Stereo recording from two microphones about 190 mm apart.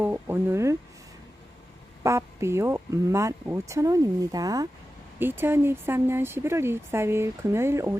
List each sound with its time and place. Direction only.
0.0 s speech: 10° right (ahead or behind)
2.0 s speech: 15° right (ahead or behind)